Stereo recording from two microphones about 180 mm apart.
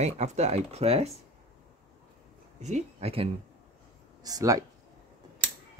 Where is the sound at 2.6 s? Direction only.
40° right (ahead or behind).